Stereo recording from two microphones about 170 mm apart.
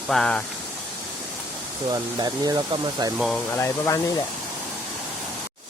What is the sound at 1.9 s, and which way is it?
Speech, 25° right (ahead or behind).